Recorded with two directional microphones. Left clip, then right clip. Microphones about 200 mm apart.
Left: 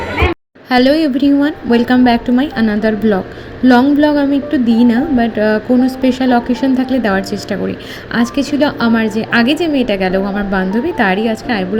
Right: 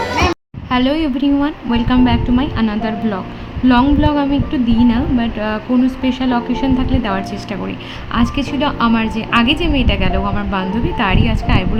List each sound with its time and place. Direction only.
0.7 s a woman's voice: 20° left (ahead or behind)